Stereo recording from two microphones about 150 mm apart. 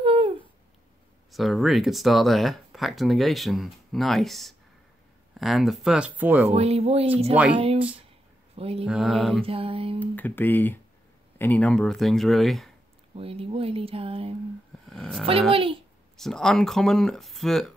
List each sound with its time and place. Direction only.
0.0 s a sound: 35° right (ahead or behind)
1.3 s speech: centre (ahead or behind)
6.5 s speech: 45° right (ahead or behind)
8.8 s speech: 5° right (ahead or behind)
9.4 s speech: 40° right (ahead or behind)
9.9 s speech: 10° left (ahead or behind)
13.1 s speech: 40° right (ahead or behind)
14.9 s speech: centre (ahead or behind)
15.5 s speech: 35° right (ahead or behind)
16.2 s speech: 5° left (ahead or behind)